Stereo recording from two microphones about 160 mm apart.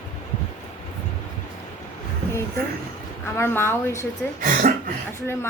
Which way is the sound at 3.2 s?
15° left (ahead or behind).